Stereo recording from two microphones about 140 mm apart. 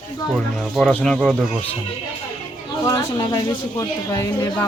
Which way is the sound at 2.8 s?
25° left (ahead or behind).